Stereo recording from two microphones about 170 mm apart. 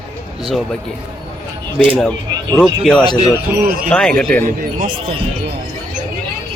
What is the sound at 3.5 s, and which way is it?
Speech, 10° right (ahead or behind).